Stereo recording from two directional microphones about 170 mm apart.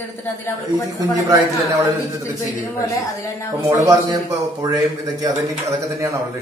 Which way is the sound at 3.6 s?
20° right (ahead or behind).